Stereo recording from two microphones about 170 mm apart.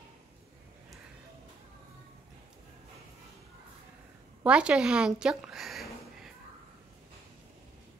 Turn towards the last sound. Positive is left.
turn(degrees=0)  # may be behind; listen again after turning